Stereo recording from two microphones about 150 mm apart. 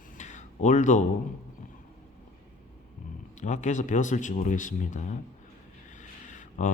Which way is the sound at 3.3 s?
50° left (ahead or behind).